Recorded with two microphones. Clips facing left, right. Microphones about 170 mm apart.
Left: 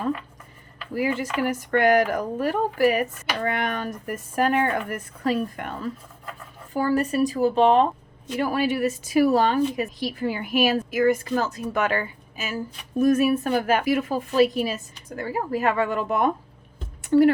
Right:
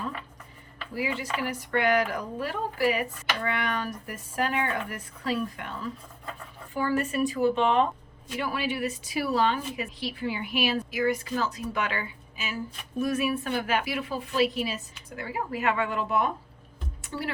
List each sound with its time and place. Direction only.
0.9 s speech: 45° left (ahead or behind)
6.7 s speech: 40° left (ahead or behind)
17.0 s music: 50° left (ahead or behind)